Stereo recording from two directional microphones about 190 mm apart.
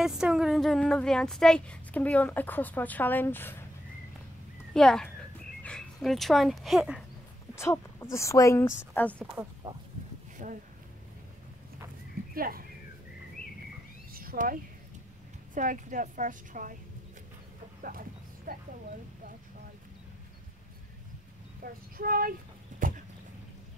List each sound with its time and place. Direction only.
0.0 s speech: 5° right (ahead or behind)
4.7 s speech: 5° left (ahead or behind)
7.5 s speech: 15° left (ahead or behind)
9.2 s speech: 5° right (ahead or behind)
10.4 s speech: 45° right (ahead or behind)
12.4 s a woman's voice: 50° right (ahead or behind)
14.1 s a sound: 50° right (ahead or behind)
15.5 s a woman's voice: 45° right (ahead or behind)
18.5 s speech: 45° right (ahead or behind)
21.6 s speech: 50° right (ahead or behind)
22.8 s a sound: 45° right (ahead or behind)